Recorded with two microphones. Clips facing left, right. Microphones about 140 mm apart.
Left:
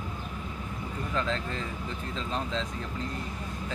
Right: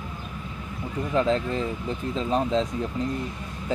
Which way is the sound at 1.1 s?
30° right (ahead or behind).